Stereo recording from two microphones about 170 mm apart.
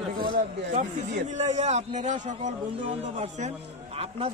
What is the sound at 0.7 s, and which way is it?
A man's voice, 45° right (ahead or behind).